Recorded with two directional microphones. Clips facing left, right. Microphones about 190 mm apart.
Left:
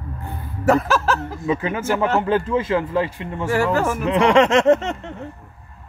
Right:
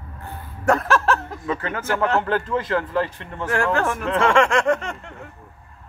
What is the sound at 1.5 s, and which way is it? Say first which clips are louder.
Speech: left 3 dB; 15° left (ahead or behind).